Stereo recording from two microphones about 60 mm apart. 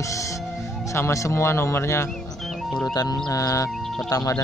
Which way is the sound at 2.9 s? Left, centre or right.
Left.